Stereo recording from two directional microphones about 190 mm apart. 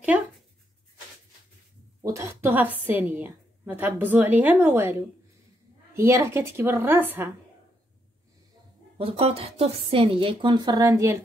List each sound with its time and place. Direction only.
2.0 s a woman's voice: 15° right (ahead or behind)
8.9 s speech: 30° right (ahead or behind)